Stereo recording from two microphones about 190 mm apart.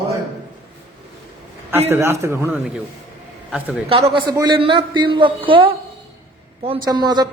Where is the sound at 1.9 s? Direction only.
15° right (ahead or behind).